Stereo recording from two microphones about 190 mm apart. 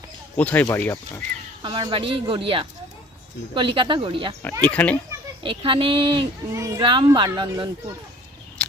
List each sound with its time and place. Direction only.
0.3 s speech: 10° left (ahead or behind)
1.6 s a woman's voice: 25° right (ahead or behind)
4.6 s speech: 5° left (ahead or behind)
5.4 s a woman's voice: 25° right (ahead or behind)